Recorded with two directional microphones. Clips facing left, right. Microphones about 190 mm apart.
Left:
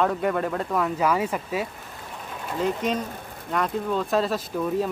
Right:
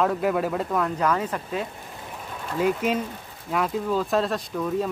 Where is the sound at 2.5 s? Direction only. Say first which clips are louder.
Right 2 dB; 5° right (ahead or behind).